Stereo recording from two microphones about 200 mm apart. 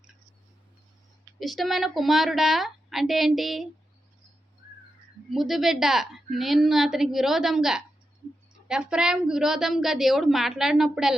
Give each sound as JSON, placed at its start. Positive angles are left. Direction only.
{"t": 1.4, "sound": "a woman's voice", "side_deg": 0}
{"t": 5.3, "sound": "a woman's voice", "side_deg": 0}